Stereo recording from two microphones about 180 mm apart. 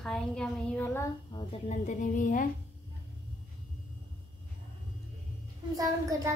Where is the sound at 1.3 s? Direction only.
40° left (ahead or behind).